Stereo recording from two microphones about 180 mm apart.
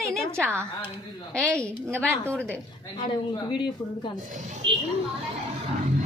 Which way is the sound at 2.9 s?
25° left (ahead or behind).